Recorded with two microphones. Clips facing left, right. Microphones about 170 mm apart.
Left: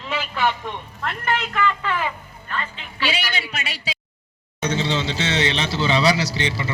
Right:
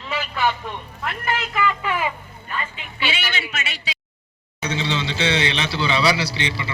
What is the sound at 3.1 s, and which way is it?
A man's voice, 35° left (ahead or behind).